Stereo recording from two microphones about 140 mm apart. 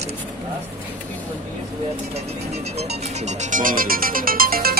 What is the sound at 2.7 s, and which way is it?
Speech, 55° right (ahead or behind).